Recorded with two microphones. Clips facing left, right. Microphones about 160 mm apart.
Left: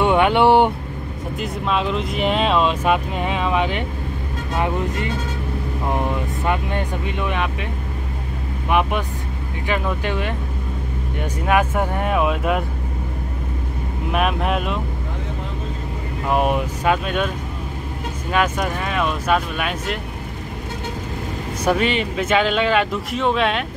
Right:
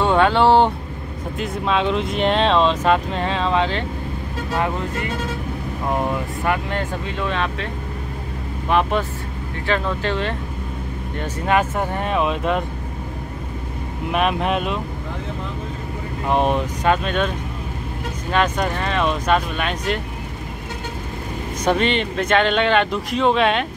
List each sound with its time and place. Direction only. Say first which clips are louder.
0.0 s speech: left 1 dB; 15° left (ahead or behind)
1.4 s speech: right 2 dB; centre (ahead or behind); by 7.4 s 15° left (ahead or behind)
8.6 s speech: right 1 dB; 15° left (ahead or behind)
14.1 s speech: right 1 dB; centre (ahead or behind)
16.3 s speech: even; 10° left (ahead or behind)
18.3 s speech: right 1 dB; 5° left (ahead or behind)
21.6 s speech: even; 5° left (ahead or behind)